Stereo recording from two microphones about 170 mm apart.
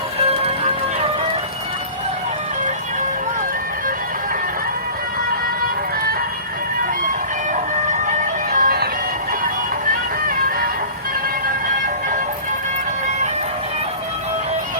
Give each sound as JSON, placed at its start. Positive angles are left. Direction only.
{"t": 0.2, "sound": "music", "side_deg": -35}
{"t": 8.2, "sound": "music", "side_deg": -55}